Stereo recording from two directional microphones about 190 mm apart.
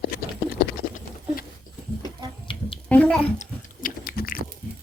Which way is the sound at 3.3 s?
40° left (ahead or behind).